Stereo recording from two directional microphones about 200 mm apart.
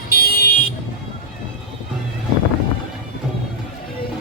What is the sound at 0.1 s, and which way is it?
Vehicle, 50° left (ahead or behind).